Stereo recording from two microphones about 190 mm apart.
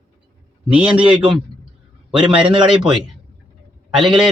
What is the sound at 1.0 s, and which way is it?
Speech, 25° right (ahead or behind).